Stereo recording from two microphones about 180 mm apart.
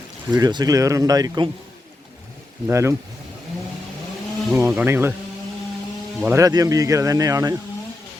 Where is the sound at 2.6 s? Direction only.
15° right (ahead or behind).